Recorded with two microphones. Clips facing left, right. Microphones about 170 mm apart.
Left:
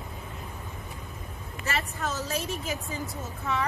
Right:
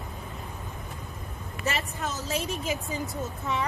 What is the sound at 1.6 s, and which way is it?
A woman's voice, 20° right (ahead or behind).